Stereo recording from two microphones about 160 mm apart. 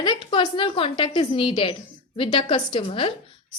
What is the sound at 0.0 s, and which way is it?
A woman's voice, 30° left (ahead or behind).